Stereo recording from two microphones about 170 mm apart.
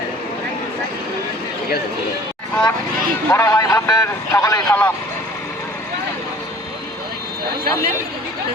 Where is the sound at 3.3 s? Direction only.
15° left (ahead or behind).